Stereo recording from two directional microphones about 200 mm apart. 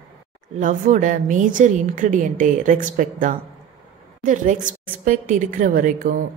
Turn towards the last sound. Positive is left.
turn(degrees=-40)  # may be behind; listen again after turning